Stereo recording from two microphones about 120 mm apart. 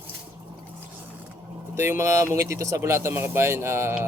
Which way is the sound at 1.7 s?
25° right (ahead or behind).